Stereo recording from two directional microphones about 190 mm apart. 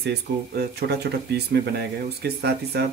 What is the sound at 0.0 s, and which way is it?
Speech, 60° right (ahead or behind).